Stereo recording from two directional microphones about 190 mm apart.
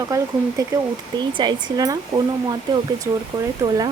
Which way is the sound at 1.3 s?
25° right (ahead or behind).